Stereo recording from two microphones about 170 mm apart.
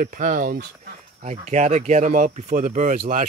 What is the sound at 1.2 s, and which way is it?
Speech, 45° right (ahead or behind).